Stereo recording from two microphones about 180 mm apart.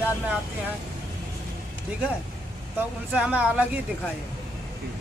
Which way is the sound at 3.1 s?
5° right (ahead or behind).